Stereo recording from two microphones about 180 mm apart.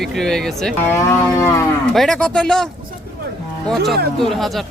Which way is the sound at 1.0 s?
15° left (ahead or behind).